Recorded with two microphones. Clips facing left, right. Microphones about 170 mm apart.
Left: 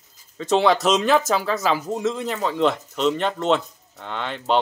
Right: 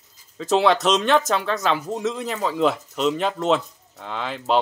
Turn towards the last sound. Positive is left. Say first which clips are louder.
# even
turn(degrees=0)  # may be behind; listen again after turning